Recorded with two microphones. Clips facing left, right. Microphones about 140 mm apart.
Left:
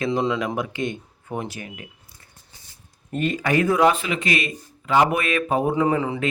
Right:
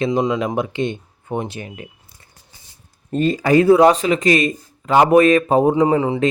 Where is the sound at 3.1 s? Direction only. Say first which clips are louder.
Right 7 dB; 35° right (ahead or behind).